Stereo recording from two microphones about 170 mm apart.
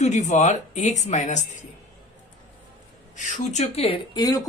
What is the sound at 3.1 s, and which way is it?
Speech, 45° left (ahead or behind).